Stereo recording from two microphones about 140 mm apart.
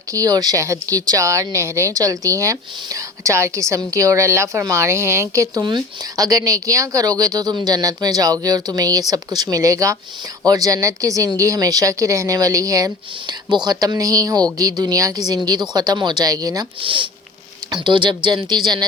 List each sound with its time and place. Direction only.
0.1 s speech: 25° right (ahead or behind)
16.8 s speech: 35° right (ahead or behind)